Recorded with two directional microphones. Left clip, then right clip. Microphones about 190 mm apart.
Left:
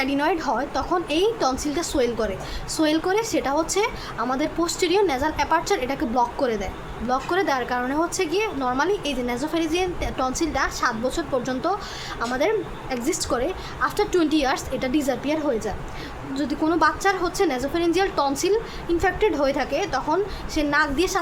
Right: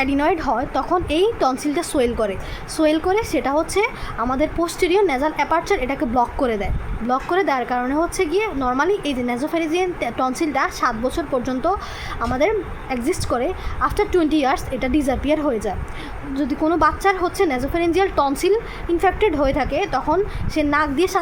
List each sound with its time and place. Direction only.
0.0 s a woman's voice: 30° right (ahead or behind)
16.3 s a woman's voice: 25° right (ahead or behind)